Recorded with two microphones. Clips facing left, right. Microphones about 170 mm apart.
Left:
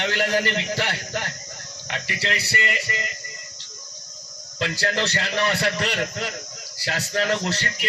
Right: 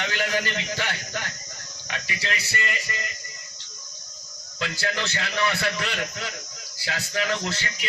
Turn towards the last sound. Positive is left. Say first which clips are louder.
# left 4 dB
turn(degrees=35)  # may be behind; listen again after turning